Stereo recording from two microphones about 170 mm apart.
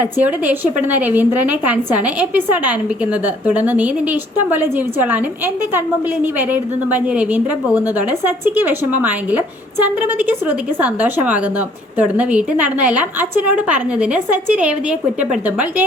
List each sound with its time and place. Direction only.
0.0 s a woman's voice: 10° right (ahead or behind)
6.5 s a woman's voice: 10° right (ahead or behind)